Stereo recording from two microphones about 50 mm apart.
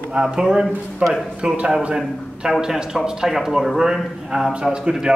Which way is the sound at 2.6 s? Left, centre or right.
Centre.